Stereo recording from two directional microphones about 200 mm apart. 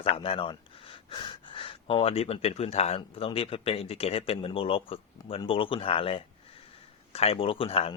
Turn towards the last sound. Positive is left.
turn(degrees=30)  # may be behind; listen again after turning